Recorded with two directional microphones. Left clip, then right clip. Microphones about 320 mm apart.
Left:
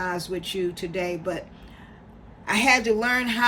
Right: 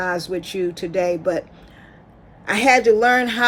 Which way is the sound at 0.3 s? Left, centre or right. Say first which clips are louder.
Right 4 dB; centre.